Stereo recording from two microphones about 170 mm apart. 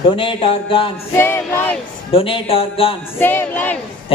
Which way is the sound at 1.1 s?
10° left (ahead or behind).